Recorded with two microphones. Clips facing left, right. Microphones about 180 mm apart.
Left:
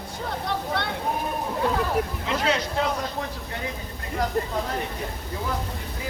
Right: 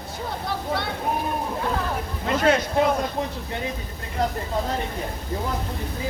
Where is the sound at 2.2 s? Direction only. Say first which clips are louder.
Right 4 dB; 50° right (ahead or behind).